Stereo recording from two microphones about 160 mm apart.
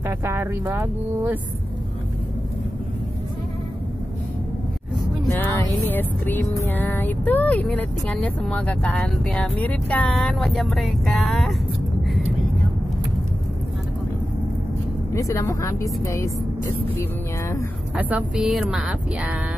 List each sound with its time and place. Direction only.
0.0 s speech: 15° right (ahead or behind)
5.4 s music: 10° left (ahead or behind)
15.1 s a woman's voice: 20° left (ahead or behind)
17.9 s speech: 10° right (ahead or behind)